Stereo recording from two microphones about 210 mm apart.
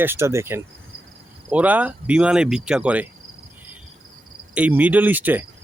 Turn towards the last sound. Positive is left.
turn(degrees=-10)  # may be behind; listen again after turning